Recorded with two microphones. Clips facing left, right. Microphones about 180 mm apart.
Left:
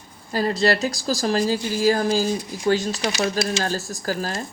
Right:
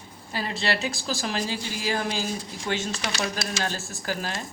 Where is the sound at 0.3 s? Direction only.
40° left (ahead or behind).